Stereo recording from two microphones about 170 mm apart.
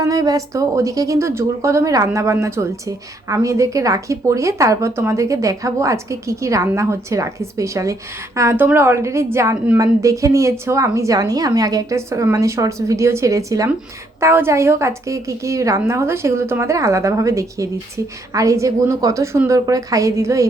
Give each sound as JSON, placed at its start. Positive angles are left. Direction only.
{"t": 0.0, "sound": "a woman's voice", "side_deg": -20}